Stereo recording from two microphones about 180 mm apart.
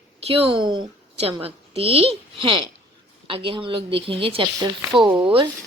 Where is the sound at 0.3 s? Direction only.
30° right (ahead or behind).